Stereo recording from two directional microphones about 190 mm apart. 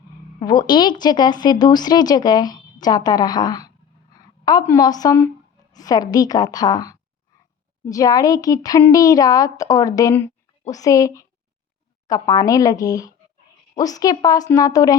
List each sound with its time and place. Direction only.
0.3 s a woman's voice: 25° left (ahead or behind)